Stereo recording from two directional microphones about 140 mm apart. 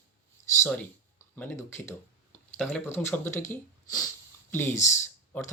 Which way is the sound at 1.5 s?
20° left (ahead or behind).